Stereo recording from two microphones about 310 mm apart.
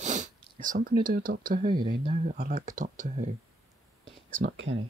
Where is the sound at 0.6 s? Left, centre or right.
Right.